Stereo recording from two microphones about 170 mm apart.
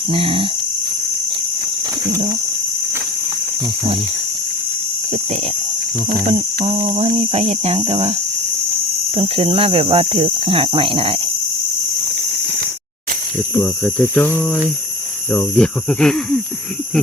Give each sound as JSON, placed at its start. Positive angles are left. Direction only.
{"t": 0.1, "sound": "cricket", "side_deg": -35}
{"t": 2.0, "sound": "speech", "side_deg": -15}
{"t": 6.1, "sound": "cricket", "side_deg": -45}
{"t": 9.1, "sound": "cricket", "side_deg": -35}
{"t": 13.8, "sound": "speech", "side_deg": 10}